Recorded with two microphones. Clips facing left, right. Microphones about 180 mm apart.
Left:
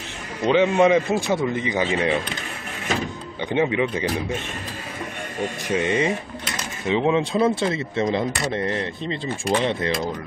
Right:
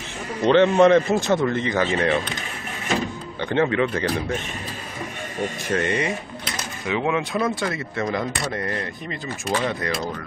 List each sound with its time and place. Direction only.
0.5 s speech: 10° left (ahead or behind)
3.4 s speech: 15° left (ahead or behind)
5.7 s speech: 15° left (ahead or behind)